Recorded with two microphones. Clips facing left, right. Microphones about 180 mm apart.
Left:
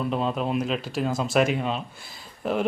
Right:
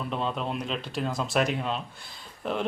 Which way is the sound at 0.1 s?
5° left (ahead or behind).